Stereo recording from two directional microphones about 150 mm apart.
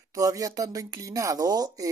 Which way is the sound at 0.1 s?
25° right (ahead or behind).